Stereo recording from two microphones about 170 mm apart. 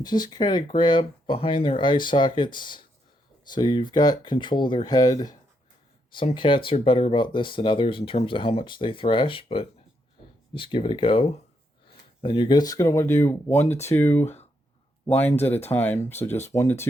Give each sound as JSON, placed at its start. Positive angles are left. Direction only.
{"t": 0.0, "sound": "speech", "side_deg": 25}